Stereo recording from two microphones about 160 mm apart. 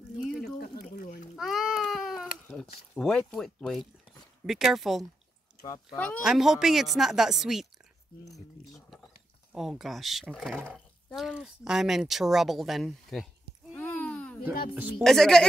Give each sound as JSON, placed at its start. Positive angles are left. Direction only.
{"t": 1.3, "sound": "a sound", "side_deg": 0}
{"t": 2.5, "sound": "speech", "side_deg": 5}
{"t": 5.6, "sound": "speech", "side_deg": 25}
{"t": 5.9, "sound": "speech", "side_deg": 5}
{"t": 9.5, "sound": "speech", "side_deg": 0}
{"t": 14.7, "sound": "speech", "side_deg": -10}
{"t": 15.0, "sound": "speech", "side_deg": 5}